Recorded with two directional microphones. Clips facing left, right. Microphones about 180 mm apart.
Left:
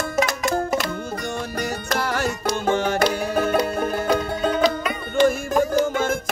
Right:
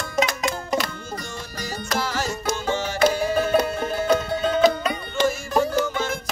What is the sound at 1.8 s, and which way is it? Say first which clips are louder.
Music: even; 60° left (ahead or behind).